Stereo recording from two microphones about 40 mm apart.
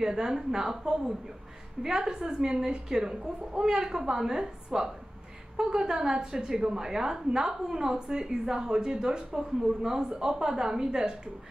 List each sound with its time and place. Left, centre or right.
0.0 s a woman's voice: centre